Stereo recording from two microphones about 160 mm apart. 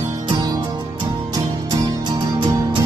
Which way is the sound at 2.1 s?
30° right (ahead or behind).